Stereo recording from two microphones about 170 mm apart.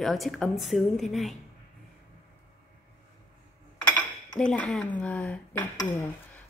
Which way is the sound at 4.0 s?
5° left (ahead or behind).